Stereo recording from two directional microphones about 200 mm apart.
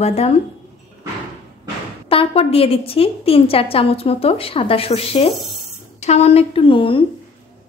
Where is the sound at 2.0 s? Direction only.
30° left (ahead or behind).